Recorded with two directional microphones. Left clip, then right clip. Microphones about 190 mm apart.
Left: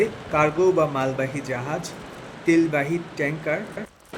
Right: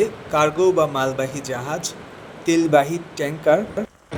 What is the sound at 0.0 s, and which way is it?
Speech, 25° right (ahead or behind).